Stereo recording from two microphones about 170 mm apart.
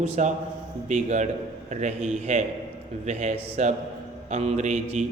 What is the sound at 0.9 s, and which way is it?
A man's voice, 45° right (ahead or behind).